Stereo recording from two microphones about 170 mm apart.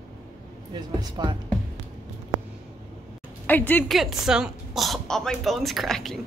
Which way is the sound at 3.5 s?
10° left (ahead or behind).